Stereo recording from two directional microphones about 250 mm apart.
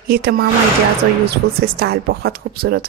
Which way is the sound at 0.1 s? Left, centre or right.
Right.